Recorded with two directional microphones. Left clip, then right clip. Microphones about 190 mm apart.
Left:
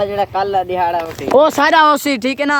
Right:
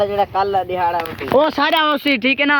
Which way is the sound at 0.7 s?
70° left (ahead or behind).